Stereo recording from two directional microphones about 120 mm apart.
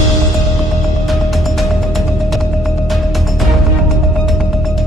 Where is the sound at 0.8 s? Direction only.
Centre (ahead or behind).